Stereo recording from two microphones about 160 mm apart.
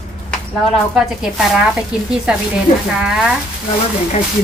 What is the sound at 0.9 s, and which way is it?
Speech, centre (ahead or behind).